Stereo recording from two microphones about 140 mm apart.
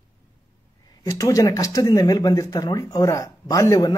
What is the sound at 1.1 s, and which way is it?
Speech, 25° left (ahead or behind).